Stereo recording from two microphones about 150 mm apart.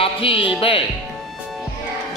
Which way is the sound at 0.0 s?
35° left (ahead or behind).